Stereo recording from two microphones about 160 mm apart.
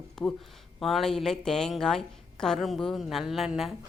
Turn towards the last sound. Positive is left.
turn(degrees=0)  # may be behind; listen again after turning